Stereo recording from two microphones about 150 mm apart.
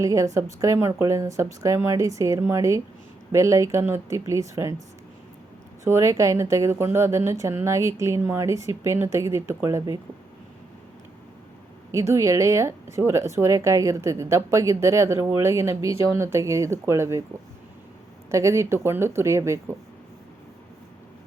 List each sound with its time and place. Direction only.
0.0 s speech: 20° right (ahead or behind)
5.8 s a woman's voice: 20° right (ahead or behind)
11.9 s speech: 20° right (ahead or behind)
18.3 s speech: 20° right (ahead or behind)